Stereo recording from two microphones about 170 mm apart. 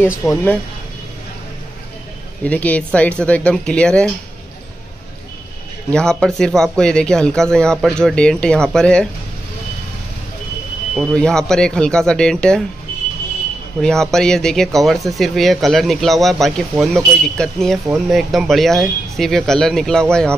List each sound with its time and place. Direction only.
0.2 s speech: 10° left (ahead or behind)
2.4 s speech: 10° left (ahead or behind)
5.9 s speech: 5° left (ahead or behind)
11.0 s speech: 5° left (ahead or behind)
13.7 s speech: 5° left (ahead or behind)